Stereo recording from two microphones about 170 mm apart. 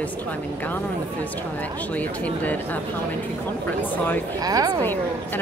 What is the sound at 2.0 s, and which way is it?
Speech, 10° left (ahead or behind).